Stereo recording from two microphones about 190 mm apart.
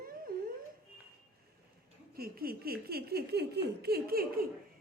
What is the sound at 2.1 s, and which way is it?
Speech, 55° right (ahead or behind).